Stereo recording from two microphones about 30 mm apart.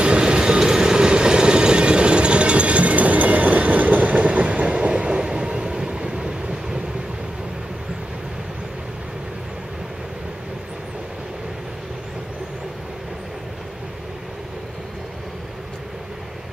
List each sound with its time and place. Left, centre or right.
0.0 s train: right